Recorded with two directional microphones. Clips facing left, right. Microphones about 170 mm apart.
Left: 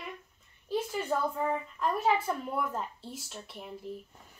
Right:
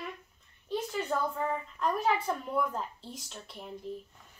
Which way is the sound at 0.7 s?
5° left (ahead or behind).